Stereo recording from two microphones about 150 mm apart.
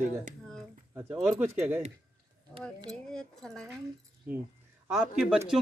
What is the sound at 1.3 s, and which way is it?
Speech, 15° right (ahead or behind).